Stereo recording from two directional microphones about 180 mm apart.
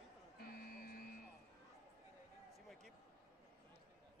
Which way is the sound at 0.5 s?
55° left (ahead or behind).